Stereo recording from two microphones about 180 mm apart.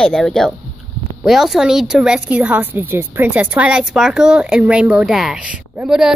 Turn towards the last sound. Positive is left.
turn(degrees=-5)  # may be behind; listen again after turning